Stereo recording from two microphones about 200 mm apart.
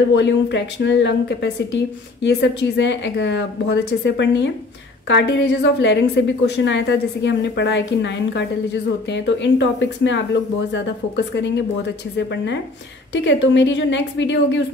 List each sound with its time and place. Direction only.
0.1 s a woman's voice: 65° left (ahead or behind)
11.3 s a woman's voice: 65° left (ahead or behind)
13.1 s a woman's voice: 65° left (ahead or behind)